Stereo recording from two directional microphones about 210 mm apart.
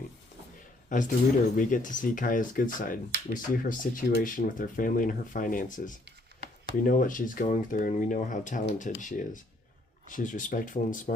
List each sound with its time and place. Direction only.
0.9 s speech: 40° left (ahead or behind)